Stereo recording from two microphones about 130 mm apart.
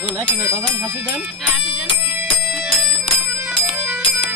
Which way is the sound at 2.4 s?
Centre (ahead or behind).